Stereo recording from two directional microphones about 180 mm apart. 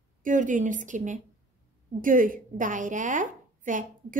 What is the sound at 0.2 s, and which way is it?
A woman's voice, 45° right (ahead or behind).